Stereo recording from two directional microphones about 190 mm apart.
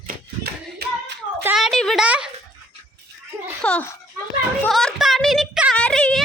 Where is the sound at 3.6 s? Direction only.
5° left (ahead or behind).